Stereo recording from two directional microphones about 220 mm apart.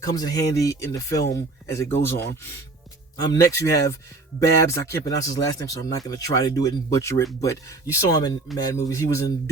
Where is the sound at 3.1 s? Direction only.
15° left (ahead or behind).